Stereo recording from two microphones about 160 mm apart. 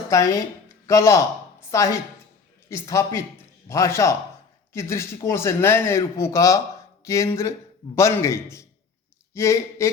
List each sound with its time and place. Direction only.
0.1 s speech: 20° left (ahead or behind)